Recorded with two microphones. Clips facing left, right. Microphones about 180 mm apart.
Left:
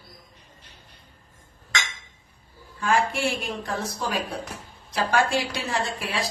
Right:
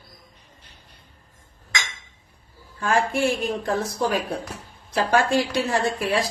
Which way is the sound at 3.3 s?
50° right (ahead or behind).